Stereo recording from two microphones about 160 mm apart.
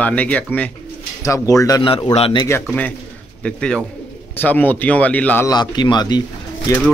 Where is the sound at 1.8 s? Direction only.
30° left (ahead or behind).